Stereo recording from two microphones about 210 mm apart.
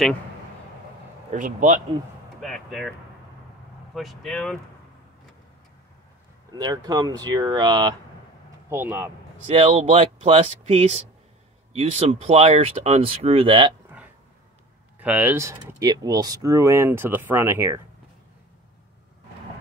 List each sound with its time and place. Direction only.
1.3 s speech: 35° right (ahead or behind)
2.4 s speech: centre (ahead or behind)
3.9 s speech: centre (ahead or behind)
6.5 s speech: 20° right (ahead or behind)
8.6 s speech: 10° right (ahead or behind)
9.5 s speech: 25° right (ahead or behind)
15.0 s speech: 5° right (ahead or behind)